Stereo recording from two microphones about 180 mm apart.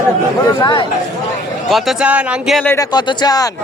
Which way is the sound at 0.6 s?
25° left (ahead or behind).